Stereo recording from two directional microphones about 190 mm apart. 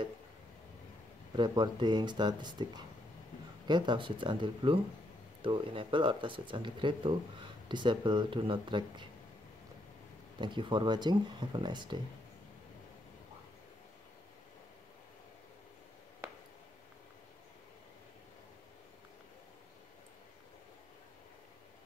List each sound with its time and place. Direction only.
1.3 s speech: 25° right (ahead or behind)
10.4 s speech: 25° right (ahead or behind)